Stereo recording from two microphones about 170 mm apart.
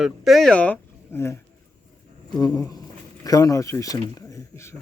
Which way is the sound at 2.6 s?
20° left (ahead or behind).